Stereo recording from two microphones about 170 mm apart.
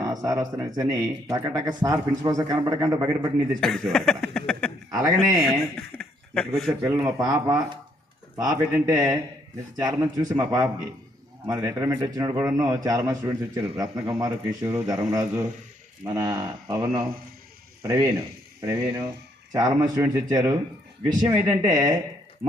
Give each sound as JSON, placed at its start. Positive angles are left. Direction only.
{"t": 0.0, "sound": "speech", "side_deg": -20}
{"t": 3.6, "sound": "speech", "side_deg": 5}
{"t": 3.9, "sound": "a sound", "side_deg": 5}
{"t": 4.9, "sound": "a man's voice", "side_deg": -20}
{"t": 5.4, "sound": "speech", "side_deg": 0}
{"t": 6.8, "sound": "speech", "side_deg": -20}